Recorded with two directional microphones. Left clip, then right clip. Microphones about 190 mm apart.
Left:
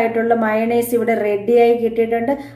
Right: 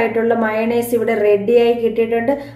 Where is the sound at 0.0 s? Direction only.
35° left (ahead or behind).